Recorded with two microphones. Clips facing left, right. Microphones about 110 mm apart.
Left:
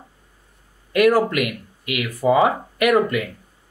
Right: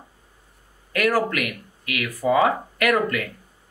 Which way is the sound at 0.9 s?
20° left (ahead or behind).